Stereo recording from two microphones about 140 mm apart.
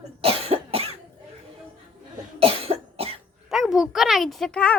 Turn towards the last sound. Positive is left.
turn(degrees=5)  # may be behind; listen again after turning